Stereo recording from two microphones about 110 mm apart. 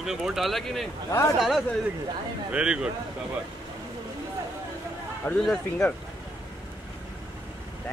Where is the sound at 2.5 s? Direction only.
10° right (ahead or behind).